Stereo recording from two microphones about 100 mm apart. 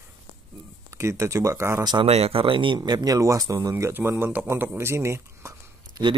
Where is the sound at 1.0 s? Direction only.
30° right (ahead or behind).